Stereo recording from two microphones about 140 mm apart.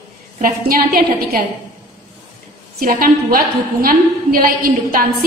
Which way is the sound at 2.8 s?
85° right.